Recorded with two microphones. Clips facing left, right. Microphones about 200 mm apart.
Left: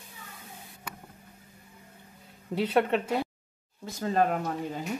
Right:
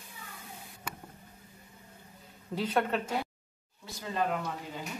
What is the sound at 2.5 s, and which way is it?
Speech, 30° left (ahead or behind).